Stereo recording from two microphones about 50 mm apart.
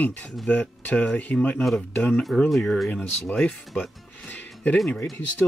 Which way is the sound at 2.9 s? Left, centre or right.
Left.